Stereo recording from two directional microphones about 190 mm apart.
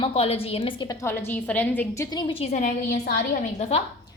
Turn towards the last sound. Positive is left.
turn(degrees=30)  # may be behind; listen again after turning